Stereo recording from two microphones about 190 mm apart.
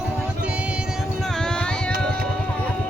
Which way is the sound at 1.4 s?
5° left (ahead or behind).